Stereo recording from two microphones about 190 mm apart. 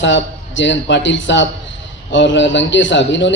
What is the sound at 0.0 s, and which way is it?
A man's voice, 75° left (ahead or behind).